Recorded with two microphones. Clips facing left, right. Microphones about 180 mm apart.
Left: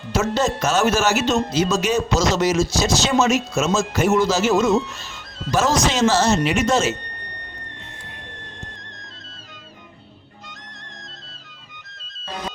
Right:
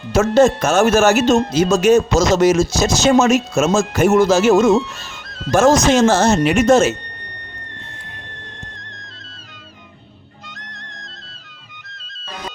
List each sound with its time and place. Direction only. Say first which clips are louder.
0.1 s speech: right 8 dB; 50° right (ahead or behind)
10.6 s music: right 3 dB; 75° right (ahead or behind)